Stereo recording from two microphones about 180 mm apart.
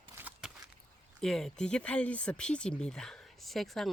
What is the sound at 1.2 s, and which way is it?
Speech, centre (ahead or behind).